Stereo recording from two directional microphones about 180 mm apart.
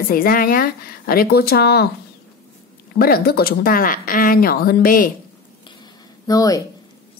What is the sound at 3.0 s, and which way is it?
A woman's voice, 55° left (ahead or behind).